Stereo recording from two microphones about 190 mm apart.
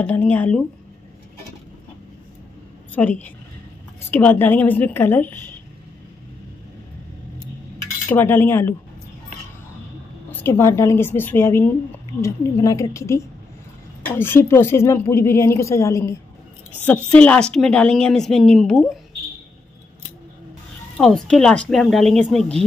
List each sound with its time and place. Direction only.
0.0 s a woman's voice: 10° left (ahead or behind)
2.9 s a woman's voice: 10° left (ahead or behind)
8.1 s a woman's voice: 10° left (ahead or behind)
10.3 s a woman's voice: 10° left (ahead or behind)
21.0 s speech: 5° left (ahead or behind)